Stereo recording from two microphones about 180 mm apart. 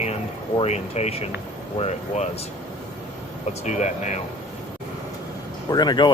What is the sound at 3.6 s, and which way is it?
Speech, 40° left (ahead or behind).